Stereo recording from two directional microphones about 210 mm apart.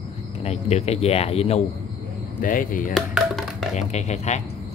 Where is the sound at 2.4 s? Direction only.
40° left (ahead or behind).